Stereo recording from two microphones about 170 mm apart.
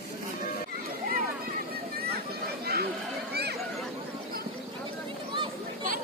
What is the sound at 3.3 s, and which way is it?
Chatter, 70° right (ahead or behind).